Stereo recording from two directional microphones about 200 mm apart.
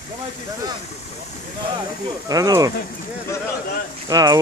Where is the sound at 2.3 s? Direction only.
20° right (ahead or behind).